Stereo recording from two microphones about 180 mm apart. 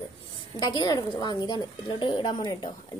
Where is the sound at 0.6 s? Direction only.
20° left (ahead or behind).